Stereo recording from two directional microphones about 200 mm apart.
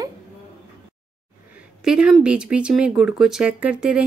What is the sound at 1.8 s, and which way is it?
Speech, 5° right (ahead or behind).